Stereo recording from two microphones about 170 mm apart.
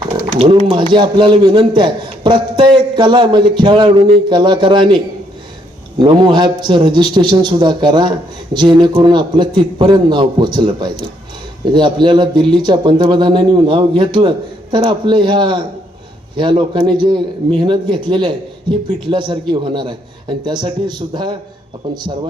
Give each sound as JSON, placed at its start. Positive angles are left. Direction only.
{"t": 0.7, "sound": "a man's voice", "side_deg": -30}
{"t": 6.0, "sound": "a man's voice", "side_deg": -25}